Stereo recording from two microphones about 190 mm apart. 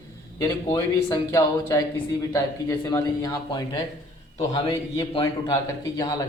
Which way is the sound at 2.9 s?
20° left (ahead or behind).